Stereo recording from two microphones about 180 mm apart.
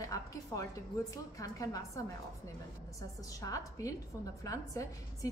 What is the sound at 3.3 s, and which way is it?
A woman's voice, 20° left (ahead or behind).